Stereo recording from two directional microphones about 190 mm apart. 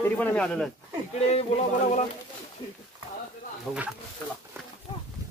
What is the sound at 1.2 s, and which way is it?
Speech, 35° left (ahead or behind).